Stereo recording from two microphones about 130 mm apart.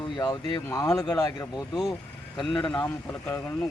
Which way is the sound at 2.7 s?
10° left (ahead or behind).